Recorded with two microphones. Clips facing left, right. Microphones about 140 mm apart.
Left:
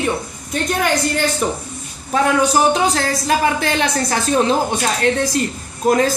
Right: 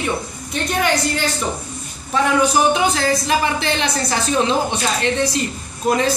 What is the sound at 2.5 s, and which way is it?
Speech, 40° left (ahead or behind).